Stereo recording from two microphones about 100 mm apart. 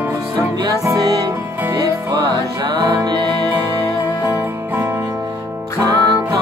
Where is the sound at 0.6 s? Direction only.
40° right (ahead or behind).